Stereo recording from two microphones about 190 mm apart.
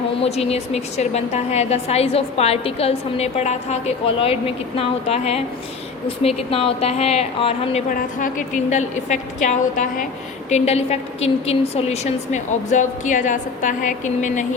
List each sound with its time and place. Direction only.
0.2 s a woman's voice: 35° left (ahead or behind)
7.9 s a woman's voice: 45° left (ahead or behind)